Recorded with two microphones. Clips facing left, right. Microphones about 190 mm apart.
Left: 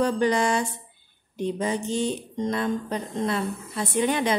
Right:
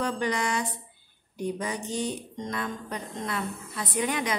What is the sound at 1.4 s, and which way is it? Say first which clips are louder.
Speech: left 5 dB; 25° left (ahead or behind).